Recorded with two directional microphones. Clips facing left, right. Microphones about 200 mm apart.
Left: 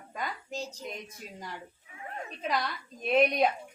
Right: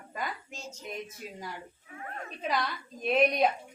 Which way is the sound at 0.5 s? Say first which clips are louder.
Left 7 dB; 35° left (ahead or behind).